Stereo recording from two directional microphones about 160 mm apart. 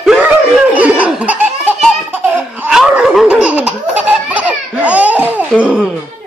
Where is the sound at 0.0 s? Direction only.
5° right (ahead or behind).